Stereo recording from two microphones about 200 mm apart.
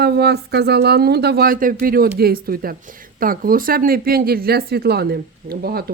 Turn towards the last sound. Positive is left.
turn(degrees=-50)  # may be behind; listen again after turning